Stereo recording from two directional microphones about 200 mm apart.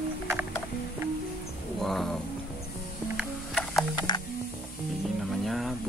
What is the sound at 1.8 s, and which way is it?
Cat, centre (ahead or behind).